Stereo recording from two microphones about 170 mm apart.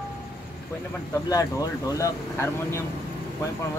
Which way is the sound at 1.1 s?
20° left (ahead or behind).